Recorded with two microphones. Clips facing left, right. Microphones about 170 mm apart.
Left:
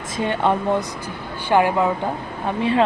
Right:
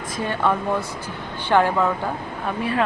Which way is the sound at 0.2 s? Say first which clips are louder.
Left 3 dB; 20° left (ahead or behind).